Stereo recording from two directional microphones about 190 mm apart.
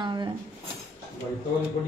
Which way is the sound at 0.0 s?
25° right (ahead or behind).